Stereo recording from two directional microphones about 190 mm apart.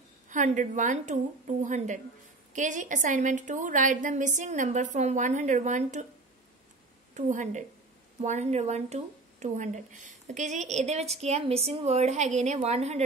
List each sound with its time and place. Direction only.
0.3 s speech: 40° right (ahead or behind)
7.2 s speech: 40° right (ahead or behind)